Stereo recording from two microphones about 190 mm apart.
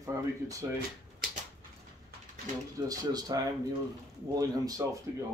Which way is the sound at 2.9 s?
20° right (ahead or behind).